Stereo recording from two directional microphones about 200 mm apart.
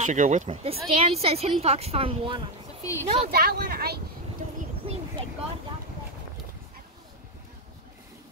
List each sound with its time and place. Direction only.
0.0 s speech: 40° right (ahead or behind)
2.8 s speech: 15° left (ahead or behind)
3.3 s speech: 50° right (ahead or behind)